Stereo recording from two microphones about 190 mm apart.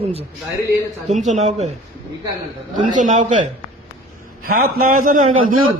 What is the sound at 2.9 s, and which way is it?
Speech, 40° right (ahead or behind).